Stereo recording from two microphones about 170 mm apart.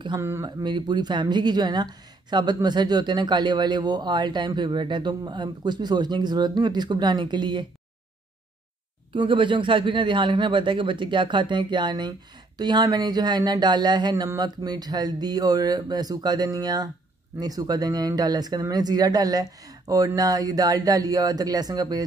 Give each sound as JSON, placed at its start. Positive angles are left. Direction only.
{"t": 0.2, "sound": "speech", "side_deg": -15}
{"t": 0.7, "sound": "speech", "side_deg": -25}
{"t": 9.1, "sound": "speech", "side_deg": -30}